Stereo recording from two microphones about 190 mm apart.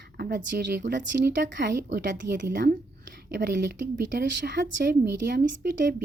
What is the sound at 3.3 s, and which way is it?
Speech, 65° right (ahead or behind).